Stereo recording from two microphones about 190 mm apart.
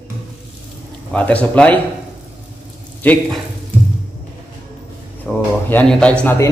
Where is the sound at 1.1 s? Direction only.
5° left (ahead or behind).